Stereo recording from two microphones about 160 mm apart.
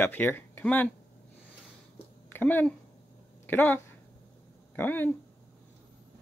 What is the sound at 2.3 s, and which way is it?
Speech, 10° left (ahead or behind).